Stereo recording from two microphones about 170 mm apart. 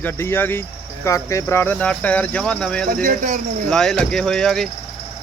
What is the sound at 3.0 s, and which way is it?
Speech, 50° right (ahead or behind).